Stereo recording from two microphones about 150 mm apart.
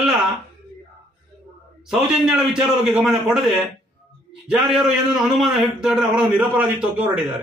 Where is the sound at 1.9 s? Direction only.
5° right (ahead or behind).